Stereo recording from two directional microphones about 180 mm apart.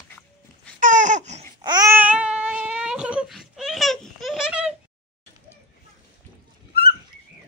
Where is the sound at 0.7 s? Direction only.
45° right (ahead or behind).